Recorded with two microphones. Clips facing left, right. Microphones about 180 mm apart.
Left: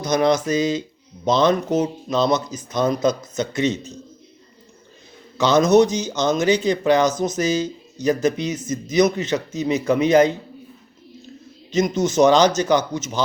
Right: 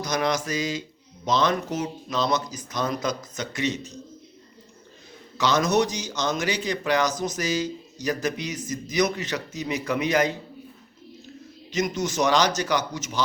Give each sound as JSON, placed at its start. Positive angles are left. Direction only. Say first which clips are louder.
{"t": 0.0, "sound": "speech", "louder": "left 7 dB", "side_deg": 25}
{"t": 5.5, "sound": "speech", "louder": "left 8 dB", "side_deg": 25}
{"t": 11.7, "sound": "speech", "louder": "left 7 dB", "side_deg": 25}